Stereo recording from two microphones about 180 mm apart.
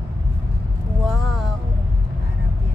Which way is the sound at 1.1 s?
5° left (ahead or behind).